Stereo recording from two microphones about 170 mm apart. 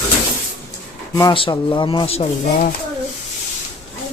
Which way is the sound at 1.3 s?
30° left (ahead or behind).